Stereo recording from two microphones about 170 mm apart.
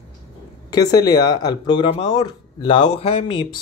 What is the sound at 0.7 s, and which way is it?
Speech, 20° left (ahead or behind).